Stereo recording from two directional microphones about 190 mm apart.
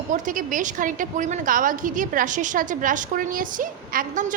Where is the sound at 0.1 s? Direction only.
45° right (ahead or behind).